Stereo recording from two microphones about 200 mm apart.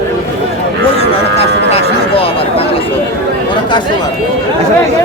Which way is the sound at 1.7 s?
30° left (ahead or behind).